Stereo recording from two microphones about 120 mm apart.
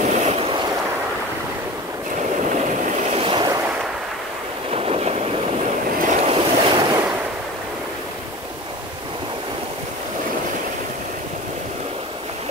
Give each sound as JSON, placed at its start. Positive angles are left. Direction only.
{"t": 0.0, "sound": "vehicle", "side_deg": -75}
{"t": 2.5, "sound": "vehicle", "side_deg": -90}
{"t": 3.2, "sound": "waves", "side_deg": -45}
{"t": 4.6, "sound": "vehicle", "side_deg": -55}
{"t": 6.3, "sound": "waves", "side_deg": -40}